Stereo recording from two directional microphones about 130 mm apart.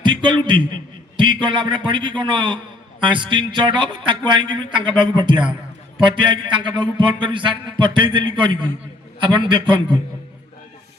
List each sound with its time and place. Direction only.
0.0 s a man's voice: 40° right (ahead or behind)
9.2 s a man's voice: 40° right (ahead or behind)